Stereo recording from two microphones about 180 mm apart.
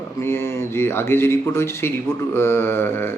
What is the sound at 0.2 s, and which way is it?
Speech, 15° left (ahead or behind).